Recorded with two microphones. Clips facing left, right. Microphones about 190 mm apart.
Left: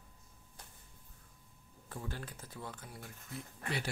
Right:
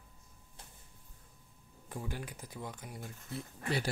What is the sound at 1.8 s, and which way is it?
Speech, 15° right (ahead or behind).